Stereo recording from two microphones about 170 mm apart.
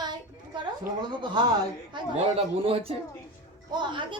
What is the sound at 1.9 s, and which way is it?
A man's voice, 35° right (ahead or behind).